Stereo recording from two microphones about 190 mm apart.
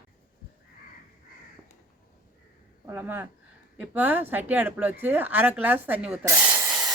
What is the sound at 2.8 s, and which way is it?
Speech, 10° right (ahead or behind).